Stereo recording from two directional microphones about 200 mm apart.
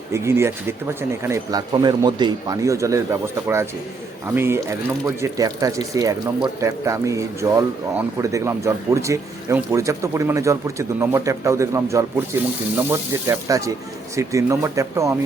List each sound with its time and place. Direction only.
0.1 s speech: 15° right (ahead or behind)